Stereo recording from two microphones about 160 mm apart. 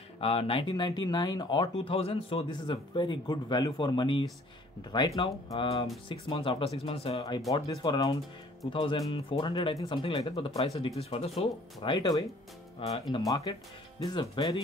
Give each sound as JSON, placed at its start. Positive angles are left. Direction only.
{"t": 0.2, "sound": "speech", "side_deg": 35}
{"t": 1.8, "sound": "speech", "side_deg": 35}
{"t": 7.2, "sound": "speech", "side_deg": 25}
{"t": 11.8, "sound": "speech", "side_deg": 30}
{"t": 13.3, "sound": "speech", "side_deg": 20}